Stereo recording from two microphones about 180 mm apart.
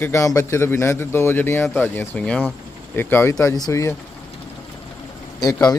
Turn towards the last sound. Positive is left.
turn(degrees=20)  # may be behind; listen again after turning